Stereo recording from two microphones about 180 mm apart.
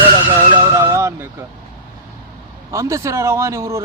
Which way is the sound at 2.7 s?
15° right (ahead or behind).